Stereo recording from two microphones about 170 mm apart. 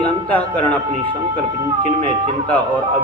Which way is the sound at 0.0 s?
10° left (ahead or behind).